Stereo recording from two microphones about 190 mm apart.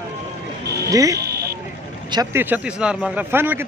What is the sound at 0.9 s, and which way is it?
A man's voice, 15° right (ahead or behind).